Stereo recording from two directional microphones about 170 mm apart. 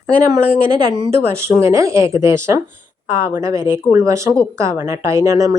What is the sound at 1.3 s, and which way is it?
Speech, 15° right (ahead or behind).